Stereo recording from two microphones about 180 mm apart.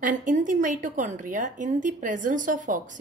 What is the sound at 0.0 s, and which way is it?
A woman's voice, 45° right (ahead or behind).